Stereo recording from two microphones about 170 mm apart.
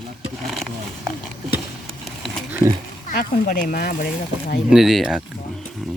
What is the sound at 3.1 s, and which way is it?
Speech, 55° left (ahead or behind).